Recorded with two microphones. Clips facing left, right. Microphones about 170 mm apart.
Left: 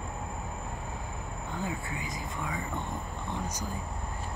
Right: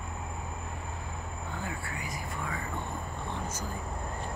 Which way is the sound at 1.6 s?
20° left (ahead or behind).